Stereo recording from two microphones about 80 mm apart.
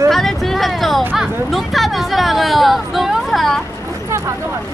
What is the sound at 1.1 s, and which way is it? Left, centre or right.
Speech, centre.